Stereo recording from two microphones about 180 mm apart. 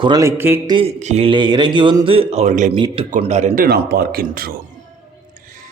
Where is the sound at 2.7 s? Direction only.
30° right (ahead or behind); by 4.5 s 55° right (ahead or behind).